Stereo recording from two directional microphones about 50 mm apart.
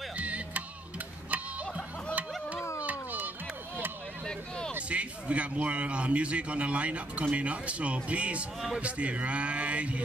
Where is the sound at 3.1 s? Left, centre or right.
Right.